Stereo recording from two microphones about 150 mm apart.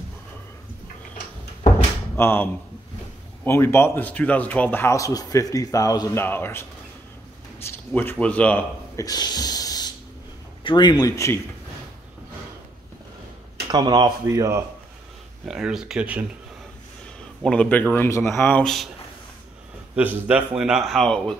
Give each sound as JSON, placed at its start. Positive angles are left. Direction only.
{"t": 2.1, "sound": "speech", "side_deg": 15}
{"t": 7.6, "sound": "speech", "side_deg": 15}
{"t": 8.9, "sound": "a sound", "side_deg": 25}
{"t": 10.6, "sound": "a man's voice", "side_deg": 30}
{"t": 13.7, "sound": "speech", "side_deg": -25}
{"t": 15.4, "sound": "a man's voice", "side_deg": -5}
{"t": 17.4, "sound": "speech", "side_deg": 5}
{"t": 18.6, "sound": "a man's voice", "side_deg": 5}
{"t": 20.0, "sound": "a man's voice", "side_deg": -10}